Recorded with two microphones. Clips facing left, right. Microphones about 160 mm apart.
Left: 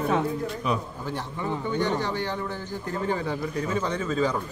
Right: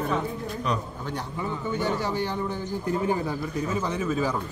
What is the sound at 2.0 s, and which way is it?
Speech, 10° right (ahead or behind).